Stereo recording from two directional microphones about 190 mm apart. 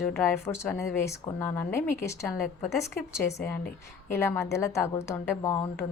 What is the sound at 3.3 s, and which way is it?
A woman's voice, 10° left (ahead or behind).